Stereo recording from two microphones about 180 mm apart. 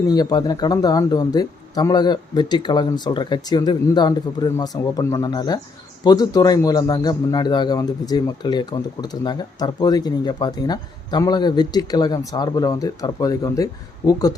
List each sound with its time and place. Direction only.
0.1 s a man's voice: 20° left (ahead or behind)